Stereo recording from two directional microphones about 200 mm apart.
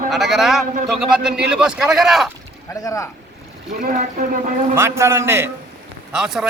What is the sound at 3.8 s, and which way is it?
Speech, 40° right (ahead or behind).